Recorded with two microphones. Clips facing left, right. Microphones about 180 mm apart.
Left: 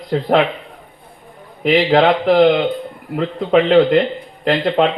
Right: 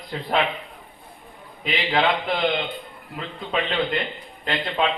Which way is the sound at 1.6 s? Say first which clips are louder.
Left 10 dB; 70° left (ahead or behind).